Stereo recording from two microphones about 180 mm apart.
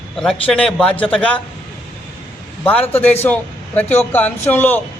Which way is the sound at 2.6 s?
10° left (ahead or behind).